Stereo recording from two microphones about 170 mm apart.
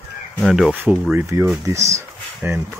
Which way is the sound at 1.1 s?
15° right (ahead or behind).